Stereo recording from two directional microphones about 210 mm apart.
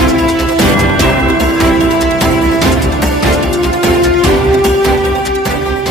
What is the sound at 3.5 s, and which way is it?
Music, centre (ahead or behind).